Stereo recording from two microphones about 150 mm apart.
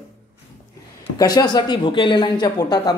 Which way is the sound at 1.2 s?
25° left (ahead or behind).